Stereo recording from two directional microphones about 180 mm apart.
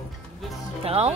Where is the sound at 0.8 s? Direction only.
35° right (ahead or behind).